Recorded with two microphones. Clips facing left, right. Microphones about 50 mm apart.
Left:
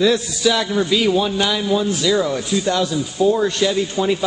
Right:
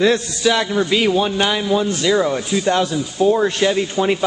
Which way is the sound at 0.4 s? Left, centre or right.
Right.